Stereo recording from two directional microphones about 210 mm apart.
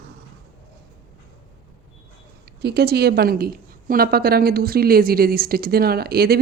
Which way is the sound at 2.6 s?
50° right (ahead or behind).